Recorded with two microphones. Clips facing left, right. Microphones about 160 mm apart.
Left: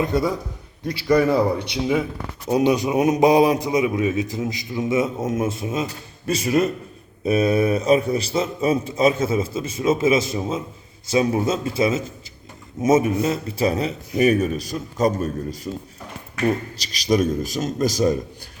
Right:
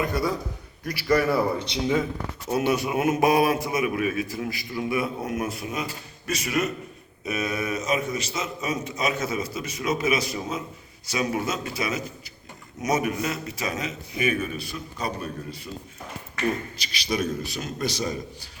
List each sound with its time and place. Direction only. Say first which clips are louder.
0.0 s a man's voice: left 4 dB; 25° left (ahead or behind); by 18.2 s 45° left (ahead or behind)